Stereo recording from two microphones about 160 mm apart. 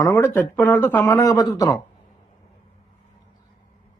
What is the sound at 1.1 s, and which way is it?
Speech, 20° left (ahead or behind).